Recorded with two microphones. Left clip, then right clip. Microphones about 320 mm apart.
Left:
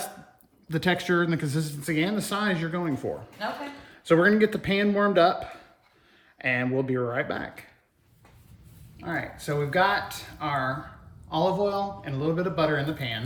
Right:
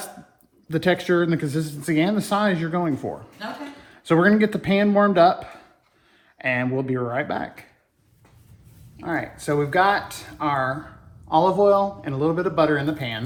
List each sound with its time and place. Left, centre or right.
0.7 s a man's voice: centre
9.0 s a man's voice: centre